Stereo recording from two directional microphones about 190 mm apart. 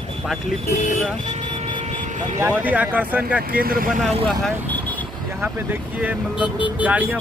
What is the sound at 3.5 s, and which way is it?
Speech, 50° right (ahead or behind).